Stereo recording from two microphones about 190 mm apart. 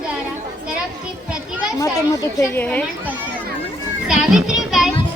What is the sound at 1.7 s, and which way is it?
Speech, 15° left (ahead or behind).